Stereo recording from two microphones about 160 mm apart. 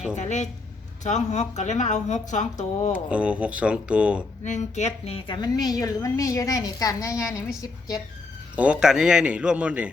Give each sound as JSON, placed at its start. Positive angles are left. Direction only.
{"t": 0.2, "sound": "speech", "side_deg": 45}
{"t": 3.1, "sound": "speech", "side_deg": -5}
{"t": 4.4, "sound": "a woman's voice", "side_deg": 50}
{"t": 8.5, "sound": "speech", "side_deg": -5}